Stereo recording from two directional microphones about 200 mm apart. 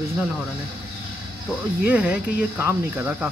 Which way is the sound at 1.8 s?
10° right (ahead or behind).